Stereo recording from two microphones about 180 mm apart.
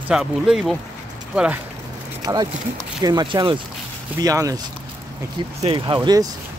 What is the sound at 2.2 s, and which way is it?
Speech, 20° right (ahead or behind).